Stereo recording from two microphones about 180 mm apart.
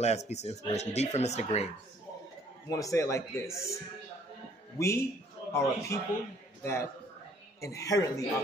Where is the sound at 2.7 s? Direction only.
15° left (ahead or behind).